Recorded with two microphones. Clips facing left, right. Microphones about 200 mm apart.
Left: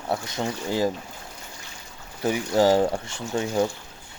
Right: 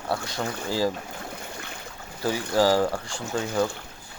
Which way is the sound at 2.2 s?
20° left (ahead or behind).